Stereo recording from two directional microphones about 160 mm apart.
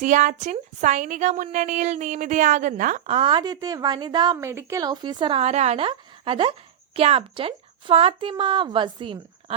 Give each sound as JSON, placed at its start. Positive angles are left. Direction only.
{"t": 0.0, "sound": "speech", "side_deg": -50}
{"t": 3.2, "sound": "a woman's voice", "side_deg": -30}